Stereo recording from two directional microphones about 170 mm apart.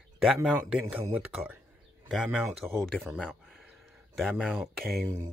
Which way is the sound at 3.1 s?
5° left (ahead or behind).